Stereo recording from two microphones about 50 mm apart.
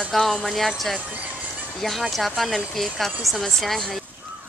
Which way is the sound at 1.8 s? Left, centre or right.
Centre.